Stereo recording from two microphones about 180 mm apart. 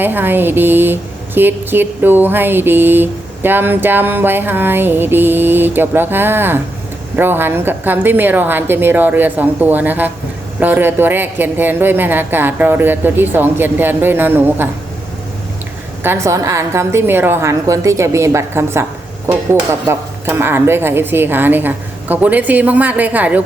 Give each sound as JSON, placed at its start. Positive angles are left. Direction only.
{"t": 0.0, "sound": "speech", "side_deg": -10}
{"t": 16.0, "sound": "speech", "side_deg": -15}